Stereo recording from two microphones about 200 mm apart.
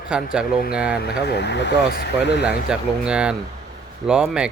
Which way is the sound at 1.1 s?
55° left (ahead or behind).